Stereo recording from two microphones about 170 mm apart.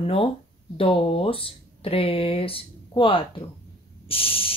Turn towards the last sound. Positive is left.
turn(degrees=35)  # may be behind; listen again after turning